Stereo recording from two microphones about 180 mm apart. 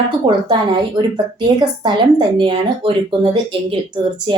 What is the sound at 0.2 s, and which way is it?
Speech, 25° right (ahead or behind).